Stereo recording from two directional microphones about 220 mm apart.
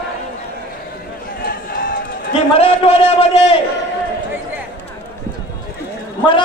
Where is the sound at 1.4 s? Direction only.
40° left (ahead or behind).